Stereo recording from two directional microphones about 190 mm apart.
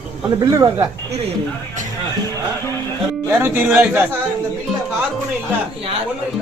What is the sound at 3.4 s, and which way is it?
Speech, 10° right (ahead or behind).